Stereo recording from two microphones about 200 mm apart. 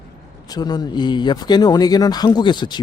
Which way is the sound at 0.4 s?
20° left (ahead or behind).